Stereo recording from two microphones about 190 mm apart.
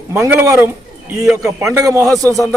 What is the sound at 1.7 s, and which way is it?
Speech, 15° right (ahead or behind).